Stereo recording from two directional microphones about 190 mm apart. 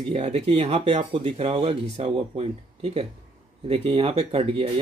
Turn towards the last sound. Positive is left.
turn(degrees=-30)  # may be behind; listen again after turning